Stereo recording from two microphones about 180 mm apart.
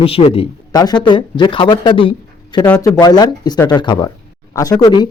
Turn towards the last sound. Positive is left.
turn(degrees=25)  # may be behind; listen again after turning